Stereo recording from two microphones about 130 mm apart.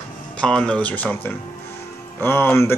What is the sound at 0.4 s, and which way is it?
Speech, 5° left (ahead or behind).